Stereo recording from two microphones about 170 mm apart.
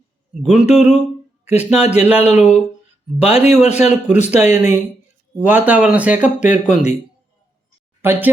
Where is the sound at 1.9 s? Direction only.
10° right (ahead or behind).